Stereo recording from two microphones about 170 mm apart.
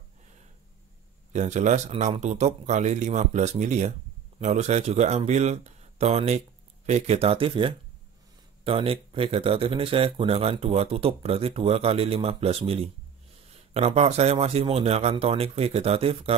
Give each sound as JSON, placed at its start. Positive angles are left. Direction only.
{"t": 1.3, "sound": "a man's voice", "side_deg": -45}